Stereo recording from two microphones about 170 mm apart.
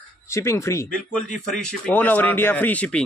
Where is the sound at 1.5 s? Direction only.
5° left (ahead or behind).